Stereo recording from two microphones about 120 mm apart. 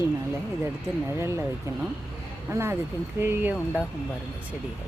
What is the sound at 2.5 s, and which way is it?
Speech, 20° right (ahead or behind).